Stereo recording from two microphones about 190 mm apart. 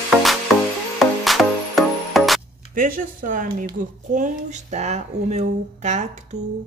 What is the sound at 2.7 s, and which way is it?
A woman's voice, 45° right (ahead or behind).